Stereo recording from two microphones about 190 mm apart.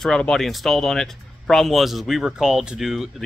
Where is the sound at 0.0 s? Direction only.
5° left (ahead or behind).